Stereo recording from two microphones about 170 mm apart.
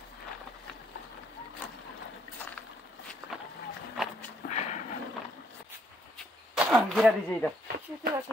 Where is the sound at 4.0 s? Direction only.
Centre (ahead or behind).